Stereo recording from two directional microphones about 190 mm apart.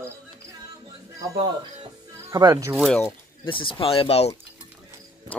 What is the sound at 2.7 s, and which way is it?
Speech, centre (ahead or behind).